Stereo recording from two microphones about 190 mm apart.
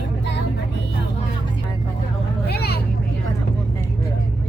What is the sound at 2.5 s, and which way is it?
Vehicle, 60° left (ahead or behind).